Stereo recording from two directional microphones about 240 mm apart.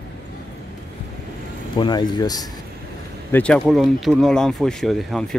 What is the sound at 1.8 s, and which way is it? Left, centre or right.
Speech, centre.